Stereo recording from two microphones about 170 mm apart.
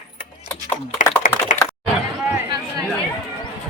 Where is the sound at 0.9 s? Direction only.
50° left (ahead or behind).